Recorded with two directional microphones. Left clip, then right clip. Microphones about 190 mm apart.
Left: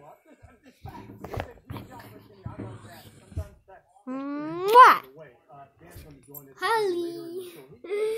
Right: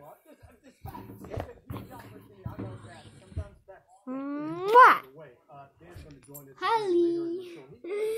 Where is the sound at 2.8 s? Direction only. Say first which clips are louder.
Left 1 dB; 15° left (ahead or behind).